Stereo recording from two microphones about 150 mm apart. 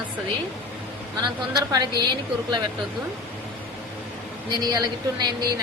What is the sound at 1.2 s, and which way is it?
Speech, 25° right (ahead or behind).